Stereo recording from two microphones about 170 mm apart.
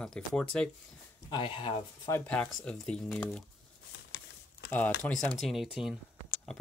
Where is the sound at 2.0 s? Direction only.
10° left (ahead or behind).